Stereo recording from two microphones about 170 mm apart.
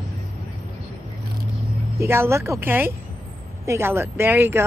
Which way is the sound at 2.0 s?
15° right (ahead or behind).